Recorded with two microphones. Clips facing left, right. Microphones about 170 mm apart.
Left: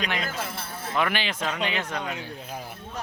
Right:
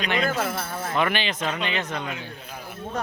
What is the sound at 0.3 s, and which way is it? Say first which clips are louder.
Speech: right 7 dB; 55° right (ahead or behind).